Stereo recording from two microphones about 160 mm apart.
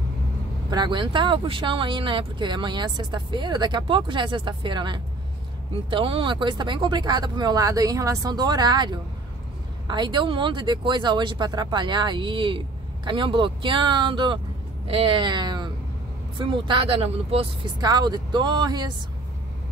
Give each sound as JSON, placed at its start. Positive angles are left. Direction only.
{"t": 0.7, "sound": "speech", "side_deg": -30}
{"t": 17.8, "sound": "speech", "side_deg": -25}